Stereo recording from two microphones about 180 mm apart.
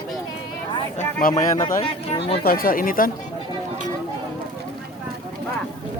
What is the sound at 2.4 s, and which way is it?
Speech, 55° left (ahead or behind).